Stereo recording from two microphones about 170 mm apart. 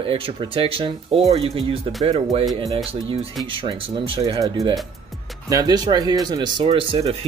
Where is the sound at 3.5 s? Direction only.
35° right (ahead or behind).